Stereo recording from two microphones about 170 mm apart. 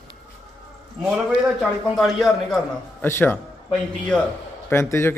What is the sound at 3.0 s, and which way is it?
A man's voice, 15° left (ahead or behind).